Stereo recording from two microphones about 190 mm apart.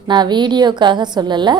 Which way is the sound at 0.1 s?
25° right (ahead or behind).